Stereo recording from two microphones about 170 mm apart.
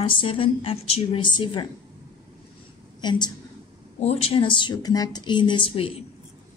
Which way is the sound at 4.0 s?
40° left (ahead or behind).